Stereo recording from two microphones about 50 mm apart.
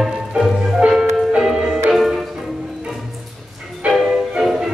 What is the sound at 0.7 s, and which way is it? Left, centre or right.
Music, centre.